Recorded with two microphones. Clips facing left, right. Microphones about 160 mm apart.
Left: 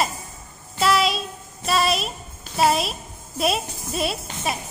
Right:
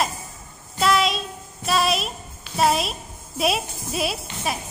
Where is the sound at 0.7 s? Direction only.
Centre (ahead or behind).